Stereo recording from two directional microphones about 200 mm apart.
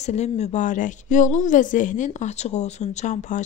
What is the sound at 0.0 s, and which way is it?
A woman's voice, 35° left (ahead or behind).